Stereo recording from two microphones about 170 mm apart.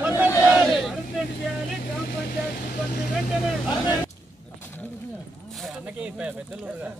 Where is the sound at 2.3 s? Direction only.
60° left (ahead or behind).